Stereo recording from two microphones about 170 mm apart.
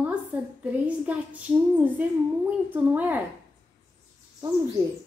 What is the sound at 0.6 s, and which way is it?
A woman's voice, 10° right (ahead or behind).